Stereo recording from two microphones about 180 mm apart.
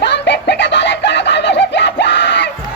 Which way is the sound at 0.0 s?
75° left (ahead or behind).